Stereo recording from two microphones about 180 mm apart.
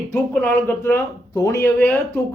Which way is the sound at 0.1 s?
10° left (ahead or behind).